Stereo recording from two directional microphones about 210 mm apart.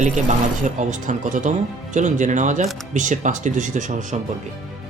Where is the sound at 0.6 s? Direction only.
35° right (ahead or behind).